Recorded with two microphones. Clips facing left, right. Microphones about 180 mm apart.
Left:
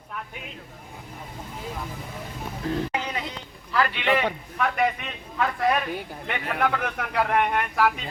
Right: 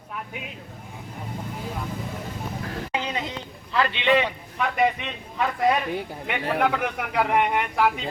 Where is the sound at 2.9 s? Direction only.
20° right (ahead or behind).